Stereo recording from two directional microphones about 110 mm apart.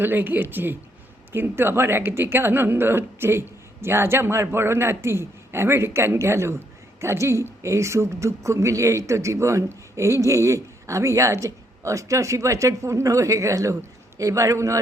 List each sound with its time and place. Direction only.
0.0 s a woman's voice: 20° right (ahead or behind)